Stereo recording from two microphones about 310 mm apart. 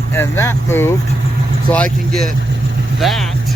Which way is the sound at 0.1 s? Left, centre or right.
Centre.